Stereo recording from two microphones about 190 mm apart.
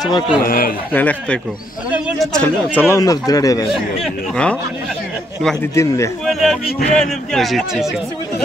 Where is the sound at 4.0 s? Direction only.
5° left (ahead or behind).